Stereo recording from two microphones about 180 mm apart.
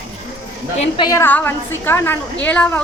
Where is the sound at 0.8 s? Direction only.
25° left (ahead or behind).